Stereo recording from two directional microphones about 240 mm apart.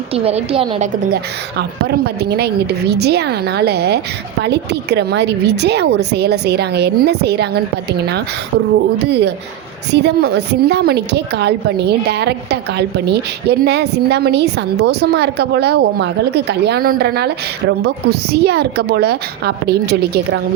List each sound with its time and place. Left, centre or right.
0.1 s a woman's voice: right
2.3 s a woman's voice: right
9.0 s a woman's voice: right